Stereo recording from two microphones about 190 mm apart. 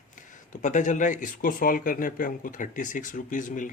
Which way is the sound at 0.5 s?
40° left (ahead or behind).